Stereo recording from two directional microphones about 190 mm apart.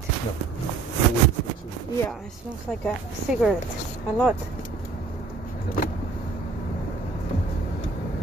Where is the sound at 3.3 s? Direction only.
Centre (ahead or behind).